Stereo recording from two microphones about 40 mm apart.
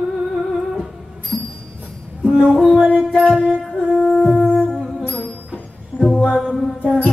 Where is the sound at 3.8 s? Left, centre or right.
Centre.